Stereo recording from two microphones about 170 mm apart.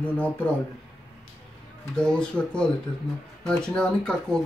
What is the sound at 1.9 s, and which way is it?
Speech, 5° left (ahead or behind).